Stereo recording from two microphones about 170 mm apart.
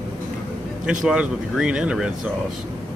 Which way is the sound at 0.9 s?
5° right (ahead or behind).